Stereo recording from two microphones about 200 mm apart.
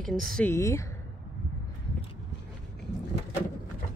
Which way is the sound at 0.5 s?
15° left (ahead or behind).